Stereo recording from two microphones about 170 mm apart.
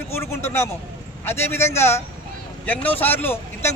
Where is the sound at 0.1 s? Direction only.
15° left (ahead or behind).